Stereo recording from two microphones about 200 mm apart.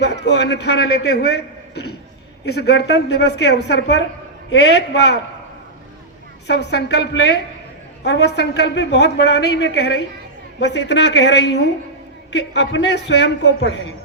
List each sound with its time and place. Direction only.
0.0 s a man's voice: 60° left (ahead or behind)
6.5 s speech: 55° left (ahead or behind)